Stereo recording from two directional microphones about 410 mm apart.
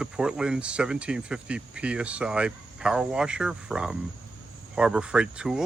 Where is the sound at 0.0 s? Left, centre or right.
Centre.